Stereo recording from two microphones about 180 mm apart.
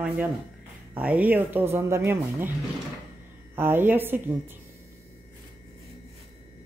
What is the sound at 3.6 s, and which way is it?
Speech, 10° right (ahead or behind).